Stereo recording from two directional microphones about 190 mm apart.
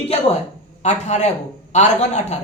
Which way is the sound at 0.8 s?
35° left (ahead or behind).